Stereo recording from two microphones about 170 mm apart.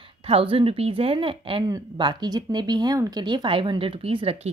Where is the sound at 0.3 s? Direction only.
35° right (ahead or behind).